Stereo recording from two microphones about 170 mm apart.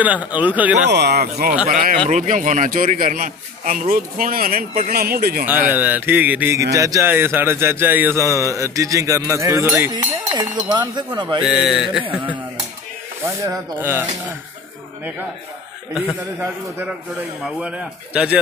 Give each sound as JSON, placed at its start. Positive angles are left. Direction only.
{"t": 0.0, "sound": "a man's voice", "side_deg": -10}
{"t": 0.8, "sound": "speech", "side_deg": -75}
{"t": 1.7, "sound": "a man's voice", "side_deg": -55}
{"t": 5.7, "sound": "a man's voice", "side_deg": -10}
{"t": 11.1, "sound": "speech", "side_deg": -25}
{"t": 11.4, "sound": "a sound", "side_deg": -5}
{"t": 13.2, "sound": "a man's voice", "side_deg": -15}
{"t": 16.3, "sound": "a man's voice", "side_deg": -10}
{"t": 17.5, "sound": "a sound", "side_deg": -5}